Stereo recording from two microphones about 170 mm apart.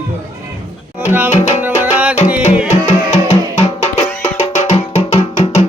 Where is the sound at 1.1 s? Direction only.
10° right (ahead or behind).